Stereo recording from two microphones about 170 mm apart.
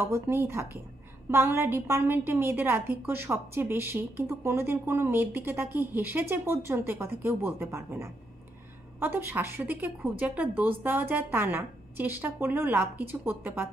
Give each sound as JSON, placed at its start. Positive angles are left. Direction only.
{"t": 0.0, "sound": "speech", "side_deg": -15}